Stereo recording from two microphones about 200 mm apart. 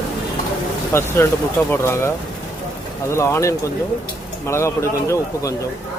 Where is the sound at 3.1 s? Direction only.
15° left (ahead or behind).